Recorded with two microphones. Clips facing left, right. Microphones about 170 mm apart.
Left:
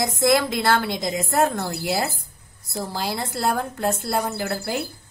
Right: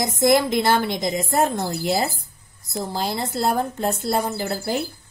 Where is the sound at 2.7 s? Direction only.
20° right (ahead or behind).